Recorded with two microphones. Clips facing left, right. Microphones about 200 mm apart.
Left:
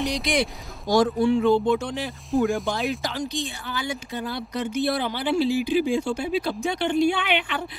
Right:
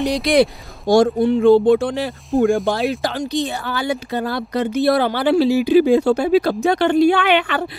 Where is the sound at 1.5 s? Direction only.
30° right (ahead or behind).